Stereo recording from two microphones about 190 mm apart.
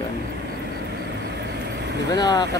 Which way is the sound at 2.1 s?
20° left (ahead or behind).